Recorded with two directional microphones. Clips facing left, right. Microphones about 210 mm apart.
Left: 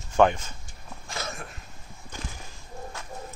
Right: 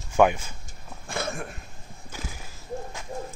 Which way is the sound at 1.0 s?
55° right (ahead or behind).